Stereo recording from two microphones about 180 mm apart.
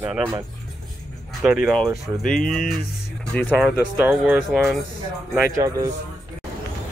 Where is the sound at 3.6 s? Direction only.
5° right (ahead or behind).